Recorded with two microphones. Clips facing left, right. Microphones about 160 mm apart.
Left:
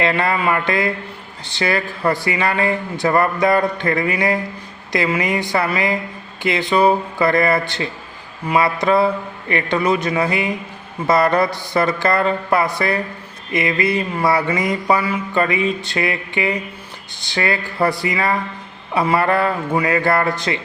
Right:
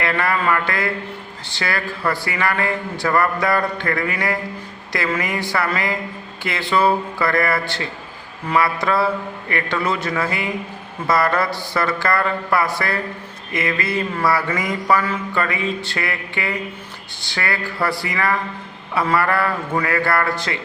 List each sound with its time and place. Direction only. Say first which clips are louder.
0.0 s mantra: left 2 dB; 20° left (ahead or behind)